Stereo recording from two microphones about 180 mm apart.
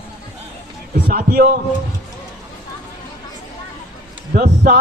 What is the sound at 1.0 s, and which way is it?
Speech, 55° right (ahead or behind).